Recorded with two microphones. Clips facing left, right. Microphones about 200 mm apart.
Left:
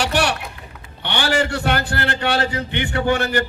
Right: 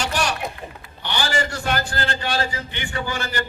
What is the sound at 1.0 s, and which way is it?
A man's voice, 60° left (ahead or behind).